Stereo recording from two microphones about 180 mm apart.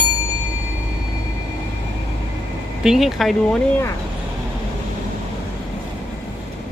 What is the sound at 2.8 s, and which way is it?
Speech, centre (ahead or behind).